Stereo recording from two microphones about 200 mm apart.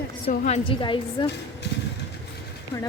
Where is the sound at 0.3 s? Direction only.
35° left (ahead or behind).